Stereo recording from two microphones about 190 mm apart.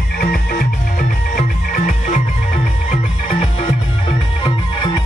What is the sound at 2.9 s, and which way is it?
Music, 30° left (ahead or behind).